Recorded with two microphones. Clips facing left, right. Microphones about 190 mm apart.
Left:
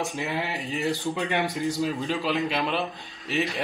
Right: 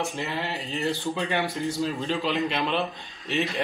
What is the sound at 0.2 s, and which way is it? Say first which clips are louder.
Speech: left 1 dB; 15° left (ahead or behind).